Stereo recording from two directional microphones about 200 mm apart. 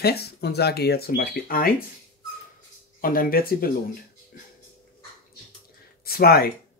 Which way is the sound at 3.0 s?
45° left (ahead or behind).